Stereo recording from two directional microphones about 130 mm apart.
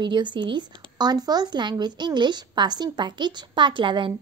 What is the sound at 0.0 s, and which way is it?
Speech, 35° right (ahead or behind).